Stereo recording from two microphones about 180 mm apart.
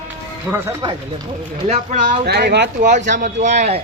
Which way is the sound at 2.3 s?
65° right (ahead or behind).